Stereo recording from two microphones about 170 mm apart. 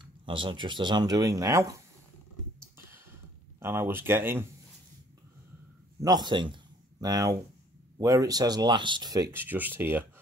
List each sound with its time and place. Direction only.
0.0 s speech: 30° right (ahead or behind)
3.5 s speech: 15° right (ahead or behind)
6.0 s speech: 25° right (ahead or behind)